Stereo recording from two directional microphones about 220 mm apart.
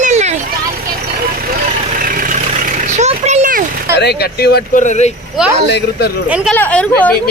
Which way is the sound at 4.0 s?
50° left (ahead or behind).